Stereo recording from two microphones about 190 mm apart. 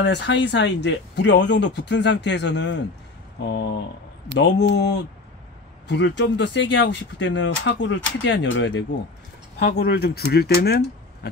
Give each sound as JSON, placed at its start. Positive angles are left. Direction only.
{"t": 0.0, "sound": "speech", "side_deg": 70}
{"t": 9.6, "sound": "speech", "side_deg": 55}